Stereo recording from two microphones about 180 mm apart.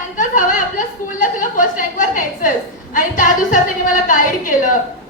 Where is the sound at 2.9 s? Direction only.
45° left (ahead or behind).